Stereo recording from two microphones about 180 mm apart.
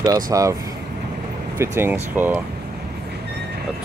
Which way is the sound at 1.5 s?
10° right (ahead or behind).